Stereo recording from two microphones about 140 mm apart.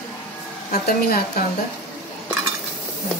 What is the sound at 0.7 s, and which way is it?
Speech, 90° left.